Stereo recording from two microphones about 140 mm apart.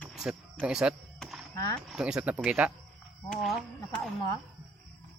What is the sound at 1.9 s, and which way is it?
Speech, 10° right (ahead or behind).